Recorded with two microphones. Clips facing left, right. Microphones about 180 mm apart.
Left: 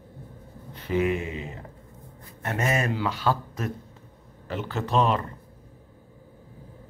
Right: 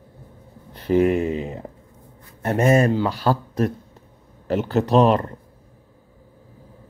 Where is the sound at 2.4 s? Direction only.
35° right (ahead or behind).